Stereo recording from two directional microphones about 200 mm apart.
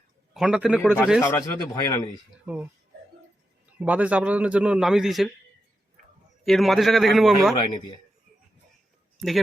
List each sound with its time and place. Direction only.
0.3 s a man's voice: 5° right (ahead or behind)
1.2 s a man's voice: 15° left (ahead or behind)
3.8 s a man's voice: 5° right (ahead or behind)
6.4 s a man's voice: centre (ahead or behind)